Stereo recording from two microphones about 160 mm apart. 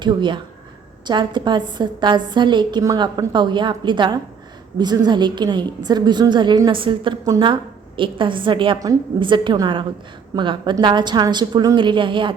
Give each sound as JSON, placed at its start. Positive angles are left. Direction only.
{"t": 0.0, "sound": "a woman's voice", "side_deg": -30}